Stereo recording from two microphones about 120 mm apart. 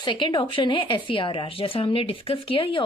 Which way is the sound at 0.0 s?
40° left (ahead or behind).